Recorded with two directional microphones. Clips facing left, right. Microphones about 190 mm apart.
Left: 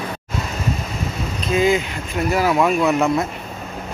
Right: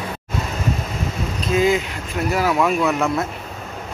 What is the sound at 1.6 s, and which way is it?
Speech, centre (ahead or behind).